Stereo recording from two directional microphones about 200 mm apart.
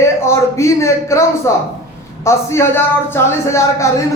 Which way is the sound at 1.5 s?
15° left (ahead or behind).